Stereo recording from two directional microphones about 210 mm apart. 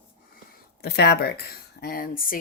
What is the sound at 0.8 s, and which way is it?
Speech, 50° left (ahead or behind).